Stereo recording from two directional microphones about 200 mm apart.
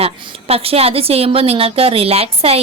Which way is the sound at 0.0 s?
30° right (ahead or behind).